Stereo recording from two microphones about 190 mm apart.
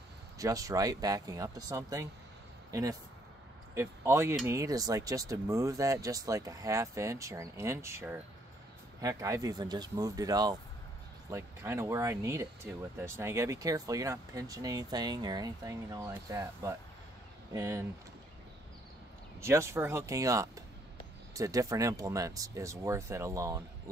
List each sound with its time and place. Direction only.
0.4 s speech: 20° right (ahead or behind)
19.4 s speech: 15° right (ahead or behind)